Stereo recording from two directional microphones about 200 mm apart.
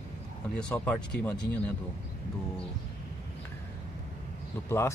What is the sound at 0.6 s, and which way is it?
Speech, 5° left (ahead or behind).